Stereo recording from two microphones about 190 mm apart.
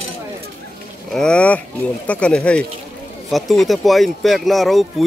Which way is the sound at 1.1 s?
5° left (ahead or behind).